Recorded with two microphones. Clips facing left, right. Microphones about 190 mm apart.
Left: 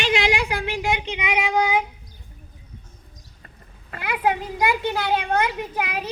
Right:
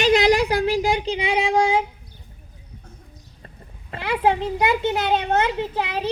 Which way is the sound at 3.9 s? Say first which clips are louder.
Right 3 dB; 25° right (ahead or behind).